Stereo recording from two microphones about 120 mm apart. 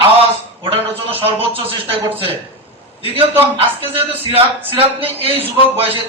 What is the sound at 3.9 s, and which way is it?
A man's voice, 55° right (ahead or behind).